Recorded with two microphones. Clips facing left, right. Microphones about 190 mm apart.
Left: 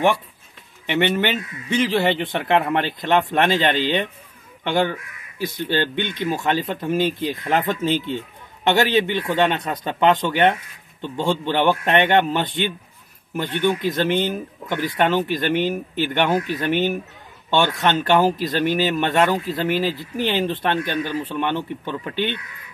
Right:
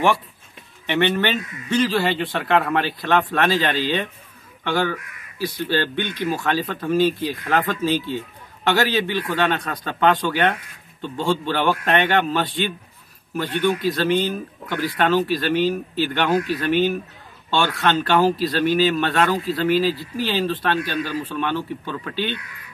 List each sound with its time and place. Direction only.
0.8 s speech: 15° left (ahead or behind)